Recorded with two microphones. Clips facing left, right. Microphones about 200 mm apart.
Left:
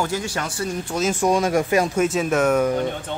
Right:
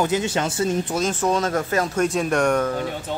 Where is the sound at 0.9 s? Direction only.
10° left (ahead or behind).